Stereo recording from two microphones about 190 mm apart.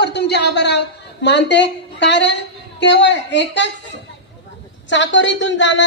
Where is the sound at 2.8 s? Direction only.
65° left (ahead or behind).